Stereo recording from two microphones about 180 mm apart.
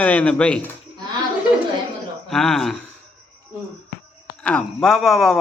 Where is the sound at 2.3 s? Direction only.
Centre (ahead or behind).